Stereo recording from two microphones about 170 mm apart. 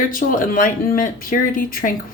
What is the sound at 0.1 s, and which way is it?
Speech, 55° left (ahead or behind).